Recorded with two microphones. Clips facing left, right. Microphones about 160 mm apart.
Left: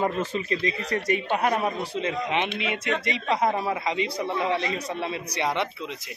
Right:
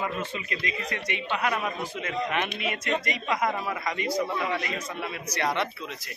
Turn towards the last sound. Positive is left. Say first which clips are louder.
# left 1 dB
turn(degrees=20)  # may be behind; listen again after turning